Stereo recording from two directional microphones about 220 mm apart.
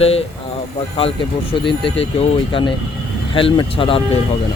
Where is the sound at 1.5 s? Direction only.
25° left (ahead or behind).